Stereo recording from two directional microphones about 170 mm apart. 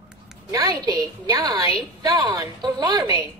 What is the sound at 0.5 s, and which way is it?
Speech, 20° right (ahead or behind).